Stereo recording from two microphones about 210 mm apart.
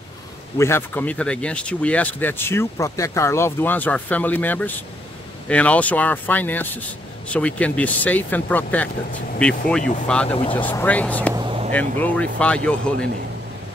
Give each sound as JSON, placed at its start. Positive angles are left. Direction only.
{"t": 0.6, "sound": "speech", "side_deg": 10}
{"t": 10.3, "sound": "speech", "side_deg": 25}
{"t": 10.6, "sound": "speech", "side_deg": 10}
{"t": 11.3, "sound": "a sound", "side_deg": -25}
{"t": 11.7, "sound": "speech", "side_deg": 5}